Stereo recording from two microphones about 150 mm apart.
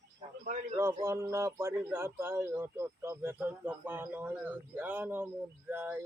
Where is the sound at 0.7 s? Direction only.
20° right (ahead or behind).